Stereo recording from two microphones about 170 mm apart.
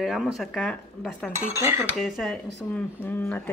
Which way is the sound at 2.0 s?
Centre (ahead or behind).